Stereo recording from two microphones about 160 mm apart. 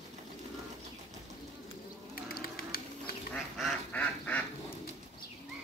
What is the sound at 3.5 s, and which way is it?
Duck, 5° left (ahead or behind).